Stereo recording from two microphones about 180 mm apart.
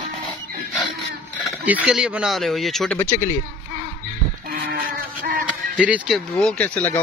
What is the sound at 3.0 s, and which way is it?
Speech, 15° left (ahead or behind).